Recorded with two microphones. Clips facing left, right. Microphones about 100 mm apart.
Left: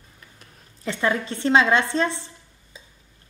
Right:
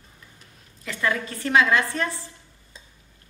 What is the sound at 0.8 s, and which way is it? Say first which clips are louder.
A woman's voice: left 3 dB; 25° left (ahead or behind).